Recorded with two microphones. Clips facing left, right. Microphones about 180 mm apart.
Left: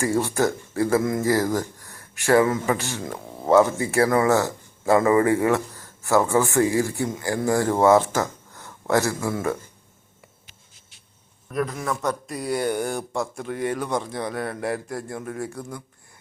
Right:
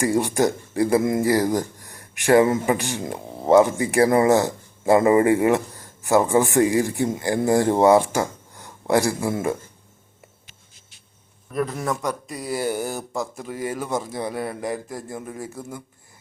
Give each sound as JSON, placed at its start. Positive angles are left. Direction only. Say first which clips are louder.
{"t": 0.0, "sound": "speech", "louder": "right 2 dB", "side_deg": -15}
{"t": 11.5, "sound": "speech", "louder": "right 1 dB", "side_deg": -5}